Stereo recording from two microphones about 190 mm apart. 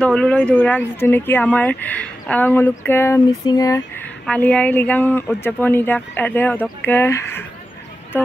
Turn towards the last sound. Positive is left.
turn(degrees=15)  # may be behind; listen again after turning